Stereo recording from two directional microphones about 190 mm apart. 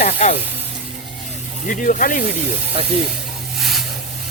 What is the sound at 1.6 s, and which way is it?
Speech, 45° left (ahead or behind).